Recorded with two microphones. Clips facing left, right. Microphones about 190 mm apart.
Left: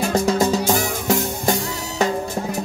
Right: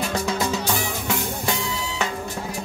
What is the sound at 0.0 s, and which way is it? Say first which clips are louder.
Music: left 6 dB; 45° left (ahead or behind).